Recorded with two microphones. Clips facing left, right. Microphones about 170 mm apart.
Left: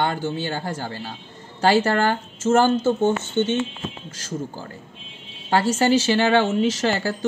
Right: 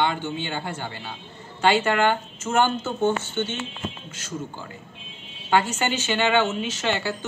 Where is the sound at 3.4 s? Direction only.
20° left (ahead or behind).